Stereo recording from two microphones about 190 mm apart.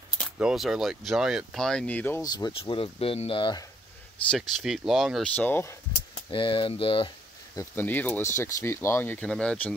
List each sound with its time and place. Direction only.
0.2 s speech: centre (ahead or behind); by 3.6 s 25° left (ahead or behind)
4.3 s speech: centre (ahead or behind)
6.3 s speech: 25° left (ahead or behind)
7.5 s speech: 10° left (ahead or behind)